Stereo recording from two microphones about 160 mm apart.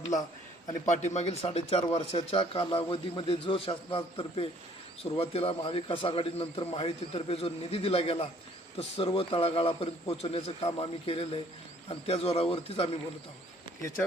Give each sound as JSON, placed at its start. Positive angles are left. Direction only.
{"t": 0.9, "sound": "speech", "side_deg": 50}